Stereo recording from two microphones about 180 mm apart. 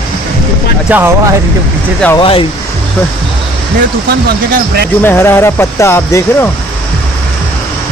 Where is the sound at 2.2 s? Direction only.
30° left (ahead or behind).